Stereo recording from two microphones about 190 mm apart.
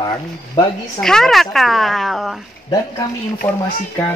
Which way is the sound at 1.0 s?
Centre (ahead or behind).